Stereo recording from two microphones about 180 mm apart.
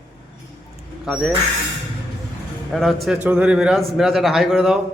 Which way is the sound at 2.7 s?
Centre (ahead or behind).